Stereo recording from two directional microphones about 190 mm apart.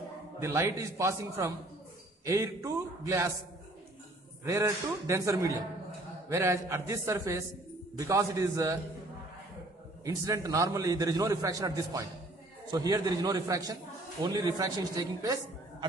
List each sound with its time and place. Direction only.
0.4 s a man's voice: 15° right (ahead or behind)
4.5 s a man's voice: 15° right (ahead or behind)
10.0 s a man's voice: 15° right (ahead or behind)